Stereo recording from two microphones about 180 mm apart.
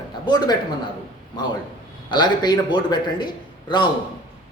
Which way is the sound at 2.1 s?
25° left (ahead or behind).